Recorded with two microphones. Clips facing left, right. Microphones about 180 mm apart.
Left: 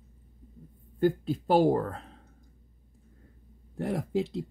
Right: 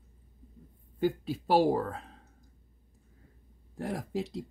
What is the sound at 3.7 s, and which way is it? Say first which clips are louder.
Speech: left 5 dB; centre (ahead or behind).